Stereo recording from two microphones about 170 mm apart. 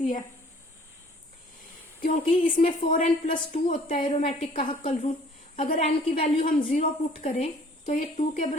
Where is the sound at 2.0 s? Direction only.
55° left (ahead or behind).